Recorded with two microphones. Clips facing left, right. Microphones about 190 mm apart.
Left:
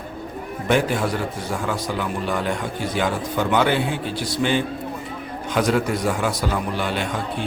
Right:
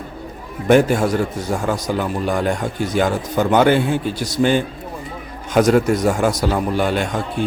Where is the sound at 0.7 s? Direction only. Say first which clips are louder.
Right 7 dB; 45° right (ahead or behind).